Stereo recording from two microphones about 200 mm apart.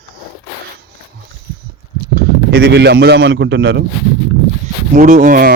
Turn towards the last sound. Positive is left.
turn(degrees=-45)  # may be behind; listen again after turning